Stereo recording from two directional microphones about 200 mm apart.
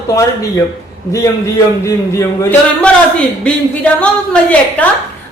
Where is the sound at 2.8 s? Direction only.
5° left (ahead or behind).